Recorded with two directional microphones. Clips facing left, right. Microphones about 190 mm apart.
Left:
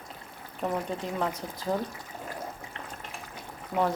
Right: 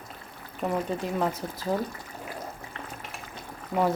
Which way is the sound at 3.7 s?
5° left (ahead or behind).